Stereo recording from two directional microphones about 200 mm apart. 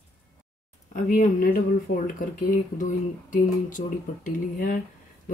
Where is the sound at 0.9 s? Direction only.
40° left (ahead or behind).